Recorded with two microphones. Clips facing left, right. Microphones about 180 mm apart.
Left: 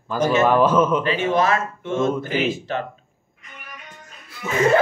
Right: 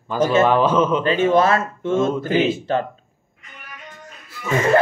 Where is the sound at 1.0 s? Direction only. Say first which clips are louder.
Right 4 dB; 30° right (ahead or behind).